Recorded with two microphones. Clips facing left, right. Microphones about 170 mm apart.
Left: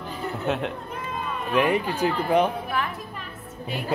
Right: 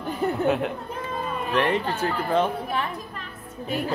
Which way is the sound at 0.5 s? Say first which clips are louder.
Even; centre (ahead or behind).